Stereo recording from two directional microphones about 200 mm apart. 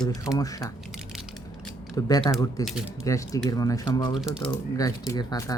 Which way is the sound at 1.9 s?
20° left (ahead or behind).